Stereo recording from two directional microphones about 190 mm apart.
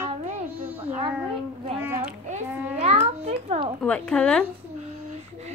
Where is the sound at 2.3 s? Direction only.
35° right (ahead or behind).